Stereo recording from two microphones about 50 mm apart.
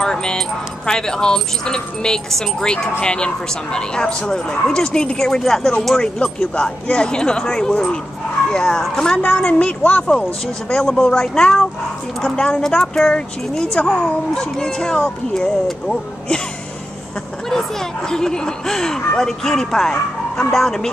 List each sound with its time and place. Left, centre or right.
0.0 s a woman's voice: centre
10.7 s speech: centre
17.5 s speech: centre